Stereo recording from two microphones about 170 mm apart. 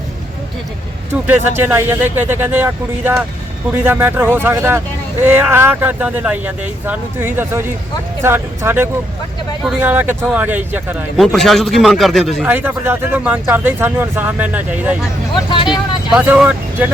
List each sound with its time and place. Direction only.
1.3 s speech: 15° right (ahead or behind)
11.2 s speech: centre (ahead or behind)
12.5 s speech: 10° right (ahead or behind)
15.4 s speech: 30° left (ahead or behind)
16.1 s speech: 10° right (ahead or behind)